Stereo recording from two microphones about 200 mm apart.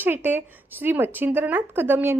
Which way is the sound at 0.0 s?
10° right (ahead or behind).